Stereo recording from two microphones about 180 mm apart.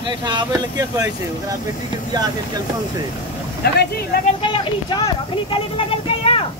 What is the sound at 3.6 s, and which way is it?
Speech, 65° left (ahead or behind).